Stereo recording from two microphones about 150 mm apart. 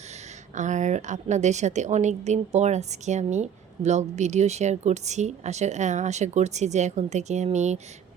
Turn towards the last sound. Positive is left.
turn(degrees=-50)  # may be behind; listen again after turning